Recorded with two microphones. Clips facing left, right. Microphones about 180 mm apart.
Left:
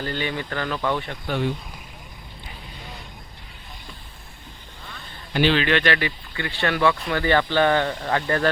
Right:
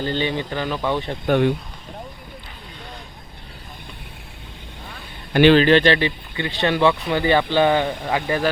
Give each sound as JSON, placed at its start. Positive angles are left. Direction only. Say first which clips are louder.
{"t": 0.0, "sound": "speech", "louder": "right 5 dB", "side_deg": -25}
{"t": 1.3, "sound": "speech", "louder": "right 7 dB", "side_deg": -60}
{"t": 5.3, "sound": "a man's voice", "louder": "right 7 dB", "side_deg": -55}
{"t": 5.5, "sound": "speech", "louder": "right 7 dB", "side_deg": -35}